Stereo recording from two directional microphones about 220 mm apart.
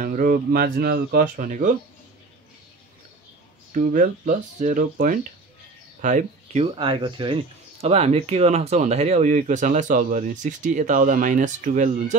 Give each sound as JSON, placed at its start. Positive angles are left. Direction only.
{"t": 0.0, "sound": "speech", "side_deg": -40}
{"t": 3.7, "sound": "speech", "side_deg": -40}